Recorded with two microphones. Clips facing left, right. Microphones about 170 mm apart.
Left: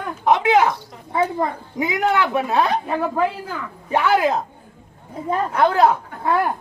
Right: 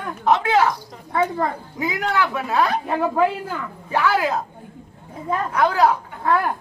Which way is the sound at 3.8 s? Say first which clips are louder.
Left 3 dB; 20° left (ahead or behind).